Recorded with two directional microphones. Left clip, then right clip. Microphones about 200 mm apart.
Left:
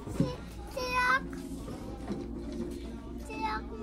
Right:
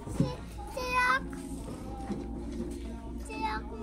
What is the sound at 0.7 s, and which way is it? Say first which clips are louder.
Cat: even; 10° left (ahead or behind).